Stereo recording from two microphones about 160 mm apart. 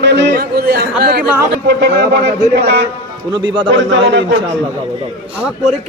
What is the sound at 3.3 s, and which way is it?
Speech, 30° right (ahead or behind).